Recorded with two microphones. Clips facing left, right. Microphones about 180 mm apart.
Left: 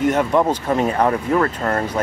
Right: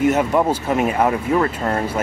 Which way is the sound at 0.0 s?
10° right (ahead or behind).